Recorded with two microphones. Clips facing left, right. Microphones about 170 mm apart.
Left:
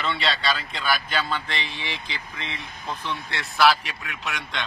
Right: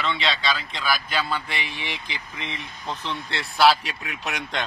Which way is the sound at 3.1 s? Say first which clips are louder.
Right 1 dB; 30° right (ahead or behind).